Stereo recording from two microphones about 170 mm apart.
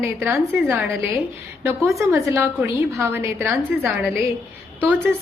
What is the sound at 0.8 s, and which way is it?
Speech, 5° right (ahead or behind).